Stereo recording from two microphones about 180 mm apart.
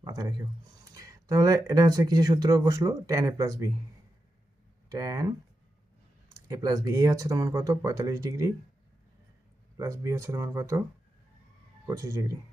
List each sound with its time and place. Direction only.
0.0 s speech: 20° right (ahead or behind)
4.9 s speech: 20° right (ahead or behind)
9.7 s speech: 20° right (ahead or behind)
11.9 s speech: 20° right (ahead or behind)